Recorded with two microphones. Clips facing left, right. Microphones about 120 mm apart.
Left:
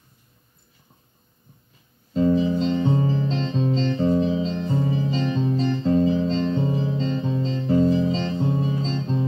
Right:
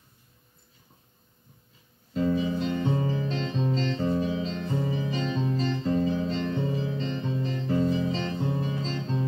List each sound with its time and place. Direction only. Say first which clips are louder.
2.1 s music: left 6 dB; 30° left (ahead or behind)